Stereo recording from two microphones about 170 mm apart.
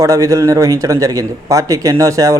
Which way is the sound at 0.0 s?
20° right (ahead or behind).